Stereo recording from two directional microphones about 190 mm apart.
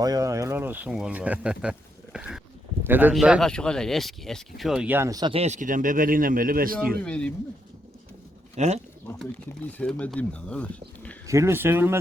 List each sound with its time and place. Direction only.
0.0 s speech: 20° right (ahead or behind)
5.3 s a man's voice: 35° right (ahead or behind)
7.0 s speech: 5° left (ahead or behind)
8.5 s speech: 35° right (ahead or behind)
9.0 s speech: 10° left (ahead or behind)
11.3 s speech: 15° right (ahead or behind)